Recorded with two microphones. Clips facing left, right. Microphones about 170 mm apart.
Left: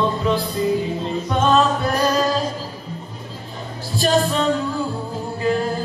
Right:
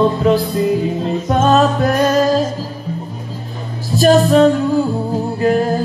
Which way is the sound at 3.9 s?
45° right (ahead or behind).